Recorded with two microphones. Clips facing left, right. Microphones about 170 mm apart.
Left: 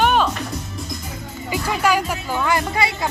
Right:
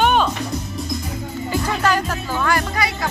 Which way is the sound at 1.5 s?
10° left (ahead or behind).